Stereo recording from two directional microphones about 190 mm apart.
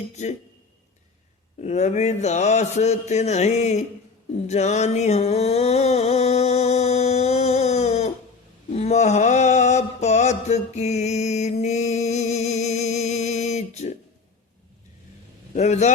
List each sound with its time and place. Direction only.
0.1 s a man's voice: 35° left (ahead or behind)
1.6 s a man's voice: 35° left (ahead or behind)
4.4 s a sound: 35° left (ahead or behind)
8.7 s mantra: 35° left (ahead or behind)
15.5 s a man's voice: 35° left (ahead or behind)